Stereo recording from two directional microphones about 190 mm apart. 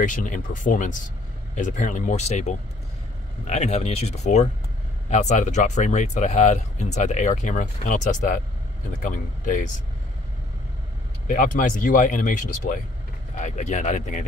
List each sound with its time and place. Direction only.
0.0 s speech: 45° left (ahead or behind)
11.2 s speech: 45° left (ahead or behind)